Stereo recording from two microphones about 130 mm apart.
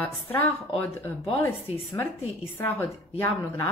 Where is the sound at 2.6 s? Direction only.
20° left (ahead or behind).